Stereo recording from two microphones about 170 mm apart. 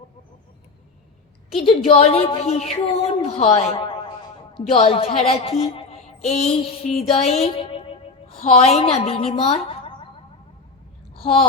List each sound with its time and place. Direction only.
1.6 s speech: 35° left (ahead or behind)
5.7 s a sound: 40° left (ahead or behind)
7.1 s music: 35° left (ahead or behind)
8.4 s speech: 45° left (ahead or behind)
11.2 s speech: 35° left (ahead or behind)